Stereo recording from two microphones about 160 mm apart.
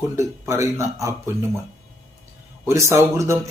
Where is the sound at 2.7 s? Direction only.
15° right (ahead or behind).